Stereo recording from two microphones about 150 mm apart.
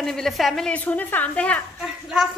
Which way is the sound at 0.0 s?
Centre (ahead or behind).